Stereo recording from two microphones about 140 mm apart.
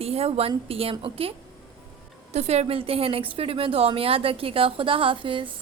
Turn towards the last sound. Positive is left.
turn(degrees=-40)  # may be behind; listen again after turning